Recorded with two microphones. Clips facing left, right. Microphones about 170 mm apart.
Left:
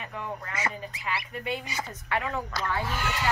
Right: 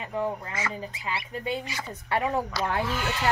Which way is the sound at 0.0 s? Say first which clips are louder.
Right 6 dB; 30° right (ahead or behind).